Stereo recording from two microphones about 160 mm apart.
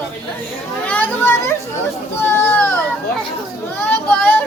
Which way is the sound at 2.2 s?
15° left (ahead or behind).